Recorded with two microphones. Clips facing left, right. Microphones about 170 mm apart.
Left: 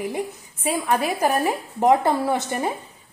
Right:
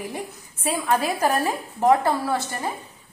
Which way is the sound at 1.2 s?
15° left (ahead or behind).